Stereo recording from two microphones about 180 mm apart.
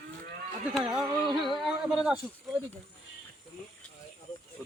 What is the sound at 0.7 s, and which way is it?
Speech, 5° right (ahead or behind).